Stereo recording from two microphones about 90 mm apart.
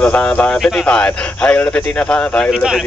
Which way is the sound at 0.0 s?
15° left (ahead or behind).